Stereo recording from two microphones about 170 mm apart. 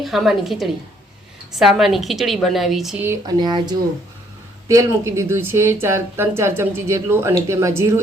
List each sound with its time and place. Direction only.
0.0 s a woman's voice: centre (ahead or behind)
3.0 s speech: 15° right (ahead or behind)
3.3 s speech: 25° right (ahead or behind)